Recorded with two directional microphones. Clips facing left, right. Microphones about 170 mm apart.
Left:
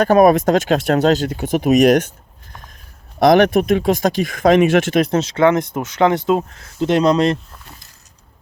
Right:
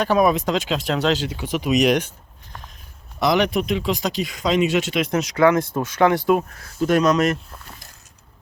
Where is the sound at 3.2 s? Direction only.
50° left (ahead or behind).